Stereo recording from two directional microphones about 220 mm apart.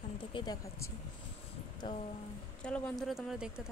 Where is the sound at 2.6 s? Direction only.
5° left (ahead or behind).